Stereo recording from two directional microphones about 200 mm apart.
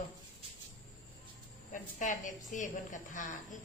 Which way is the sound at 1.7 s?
40° left (ahead or behind).